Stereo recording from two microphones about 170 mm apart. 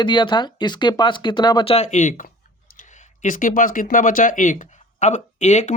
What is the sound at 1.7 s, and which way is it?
Speech, 45° left (ahead or behind).